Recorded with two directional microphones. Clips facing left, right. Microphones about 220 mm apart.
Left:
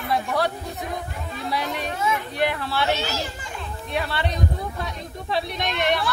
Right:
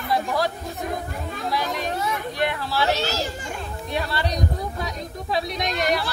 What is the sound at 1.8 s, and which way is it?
Speech, 35° right (ahead or behind).